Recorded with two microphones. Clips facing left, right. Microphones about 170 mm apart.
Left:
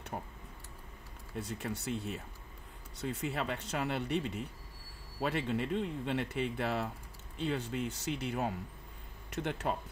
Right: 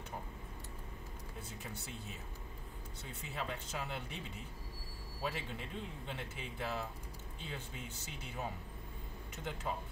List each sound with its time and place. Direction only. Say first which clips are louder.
1.3 s speech: left 11 dB; 75° left (ahead or behind)